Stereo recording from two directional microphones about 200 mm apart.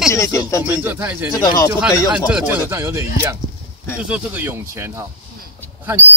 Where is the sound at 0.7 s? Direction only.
10° right (ahead or behind).